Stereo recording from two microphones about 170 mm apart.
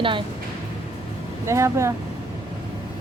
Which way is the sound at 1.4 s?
15° right (ahead or behind).